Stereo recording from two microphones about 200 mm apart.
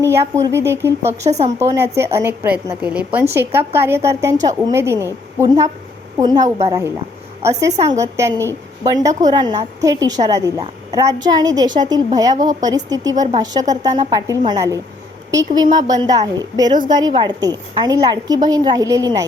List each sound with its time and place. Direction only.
0.0 s a woman's voice: 15° right (ahead or behind)
7.9 s a woman's voice: 15° right (ahead or behind)